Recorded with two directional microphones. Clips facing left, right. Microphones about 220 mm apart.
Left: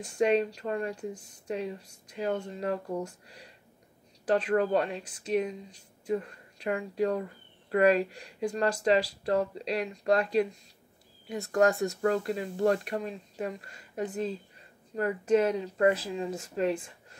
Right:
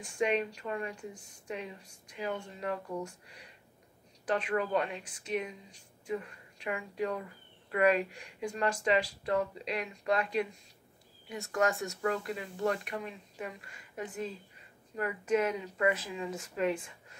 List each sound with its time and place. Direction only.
0.2 s speech: 40° left (ahead or behind)